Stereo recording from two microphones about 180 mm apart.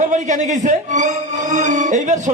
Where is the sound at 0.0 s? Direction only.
45° right (ahead or behind).